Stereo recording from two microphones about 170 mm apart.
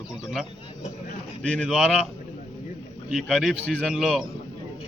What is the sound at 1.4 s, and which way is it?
Speech, 5° left (ahead or behind).